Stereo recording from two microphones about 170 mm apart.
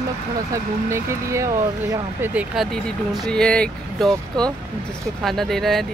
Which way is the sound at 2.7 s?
Centre (ahead or behind).